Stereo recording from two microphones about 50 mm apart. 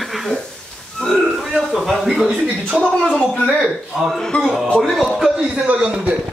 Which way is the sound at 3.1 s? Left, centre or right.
Centre.